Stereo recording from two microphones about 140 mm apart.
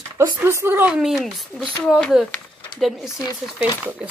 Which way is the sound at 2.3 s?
5° left (ahead or behind).